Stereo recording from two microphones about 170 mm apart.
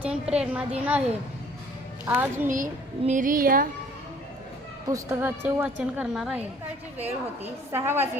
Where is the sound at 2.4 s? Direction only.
50° right (ahead or behind).